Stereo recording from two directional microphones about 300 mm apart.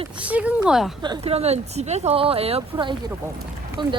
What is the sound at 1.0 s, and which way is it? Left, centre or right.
Speech, centre.